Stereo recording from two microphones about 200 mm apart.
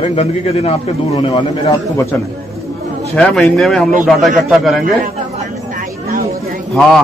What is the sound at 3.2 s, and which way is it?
A man's voice, 5° left (ahead or behind).